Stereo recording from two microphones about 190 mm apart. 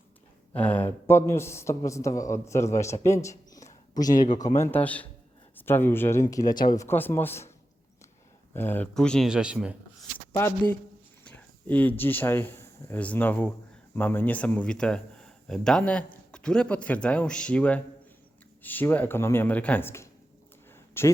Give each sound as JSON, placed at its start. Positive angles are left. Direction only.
{"t": 0.5, "sound": "a man's voice", "side_deg": 10}
{"t": 4.1, "sound": "a man's voice", "side_deg": 45}
{"t": 4.4, "sound": "a man's voice", "side_deg": 15}
{"t": 8.5, "sound": "speech", "side_deg": 10}
{"t": 11.3, "sound": "a man's voice", "side_deg": 10}
{"t": 20.7, "sound": "a sound", "side_deg": 10}